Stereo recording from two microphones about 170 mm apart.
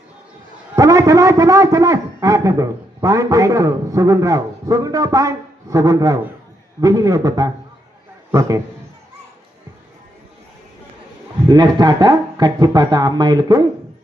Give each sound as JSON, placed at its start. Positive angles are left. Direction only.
{"t": 0.8, "sound": "a man's voice", "side_deg": -20}
{"t": 11.4, "sound": "a man's voice", "side_deg": -25}